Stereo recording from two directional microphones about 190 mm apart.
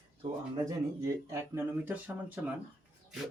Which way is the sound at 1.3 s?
10° right (ahead or behind).